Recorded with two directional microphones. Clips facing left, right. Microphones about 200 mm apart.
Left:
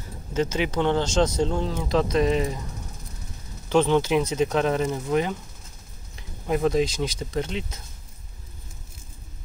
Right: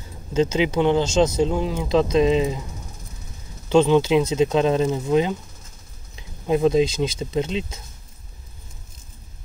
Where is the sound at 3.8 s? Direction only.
15° right (ahead or behind).